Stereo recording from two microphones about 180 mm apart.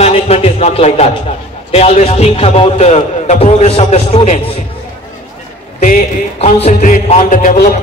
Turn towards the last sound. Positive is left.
turn(degrees=50)  # may be behind; listen again after turning